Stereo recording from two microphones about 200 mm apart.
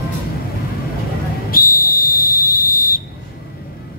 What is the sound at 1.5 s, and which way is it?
Whistle, 45° left (ahead or behind).